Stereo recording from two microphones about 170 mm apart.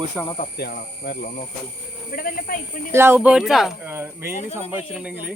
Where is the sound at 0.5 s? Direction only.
70° left (ahead or behind).